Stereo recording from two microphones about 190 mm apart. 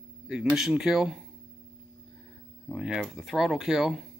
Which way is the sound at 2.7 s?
5° right (ahead or behind).